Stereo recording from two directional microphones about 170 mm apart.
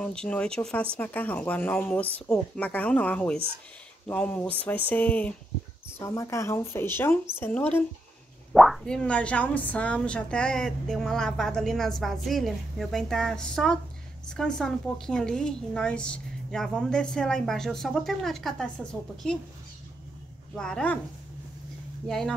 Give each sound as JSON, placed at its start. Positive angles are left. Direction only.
{"t": 0.0, "sound": "speech", "side_deg": 5}
{"t": 20.5, "sound": "speech", "side_deg": 5}
{"t": 22.0, "sound": "speech", "side_deg": 5}